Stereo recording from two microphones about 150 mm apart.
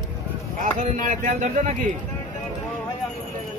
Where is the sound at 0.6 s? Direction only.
55° right (ahead or behind).